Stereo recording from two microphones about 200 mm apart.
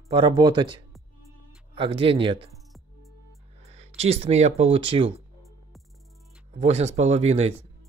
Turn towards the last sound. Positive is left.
turn(degrees=-30)  # may be behind; listen again after turning